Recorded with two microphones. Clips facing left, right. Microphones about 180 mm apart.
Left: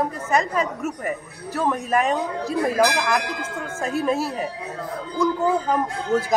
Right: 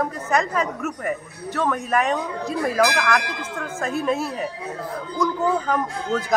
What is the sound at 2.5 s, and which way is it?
Speech, 15° left (ahead or behind).